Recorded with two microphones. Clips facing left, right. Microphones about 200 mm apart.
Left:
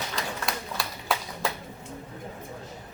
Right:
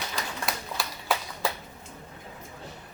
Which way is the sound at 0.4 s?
Centre (ahead or behind).